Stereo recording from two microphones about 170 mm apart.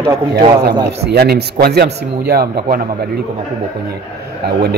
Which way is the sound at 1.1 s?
70° right (ahead or behind).